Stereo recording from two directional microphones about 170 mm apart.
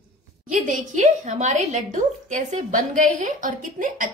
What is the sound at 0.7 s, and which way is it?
A woman's voice, 45° right (ahead or behind).